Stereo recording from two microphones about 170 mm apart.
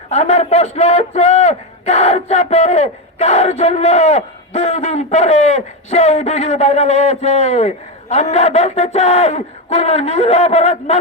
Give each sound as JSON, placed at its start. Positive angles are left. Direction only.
{"t": 0.1, "sound": "speech", "side_deg": 40}